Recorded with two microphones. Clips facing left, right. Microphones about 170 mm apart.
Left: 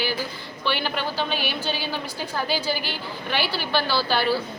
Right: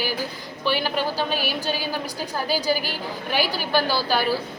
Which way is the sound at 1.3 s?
40° right (ahead or behind).